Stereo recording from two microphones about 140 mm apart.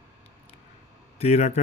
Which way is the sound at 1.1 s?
50° left (ahead or behind).